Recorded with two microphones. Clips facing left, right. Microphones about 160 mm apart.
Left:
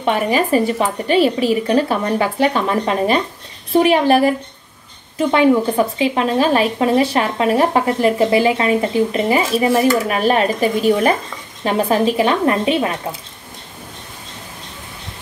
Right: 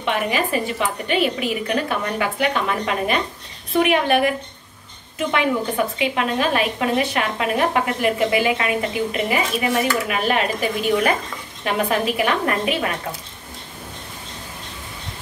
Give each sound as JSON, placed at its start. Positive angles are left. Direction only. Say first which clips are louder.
{"t": 0.0, "sound": "a woman's voice", "louder": "left 5 dB", "side_deg": 40}
{"t": 5.9, "sound": "a woman's voice", "louder": "left 5 dB", "side_deg": 35}